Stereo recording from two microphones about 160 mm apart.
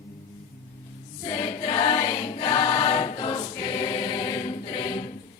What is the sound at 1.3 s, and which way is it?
Choir, 30° left (ahead or behind).